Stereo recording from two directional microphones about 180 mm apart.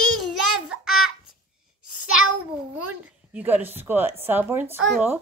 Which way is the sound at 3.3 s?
10° right (ahead or behind).